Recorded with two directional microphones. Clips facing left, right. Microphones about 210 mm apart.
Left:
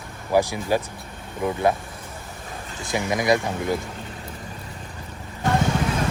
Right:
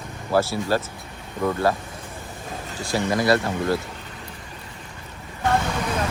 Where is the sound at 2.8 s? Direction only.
15° left (ahead or behind).